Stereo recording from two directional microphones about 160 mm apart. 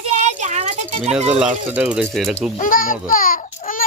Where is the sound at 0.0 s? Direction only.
45° right (ahead or behind).